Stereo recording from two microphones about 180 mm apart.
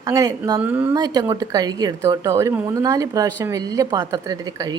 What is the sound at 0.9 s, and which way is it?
A woman's voice, 20° right (ahead or behind).